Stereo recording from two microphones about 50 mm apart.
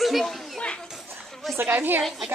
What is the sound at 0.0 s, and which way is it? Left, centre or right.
Speech, centre.